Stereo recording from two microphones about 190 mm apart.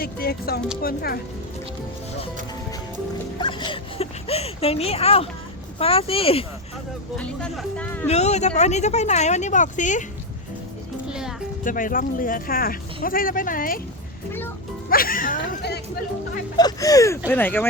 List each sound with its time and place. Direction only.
0.0 s speech: 55° left (ahead or behind)
3.4 s speech: 25° left (ahead or behind)
7.2 s speech: 5° left (ahead or behind)
8.0 s speech: 35° left (ahead or behind)
11.1 s music: 5° right (ahead or behind)
11.6 s speech: 45° left (ahead or behind)
14.8 s speech: 50° left (ahead or behind)
16.6 s speech: 20° left (ahead or behind)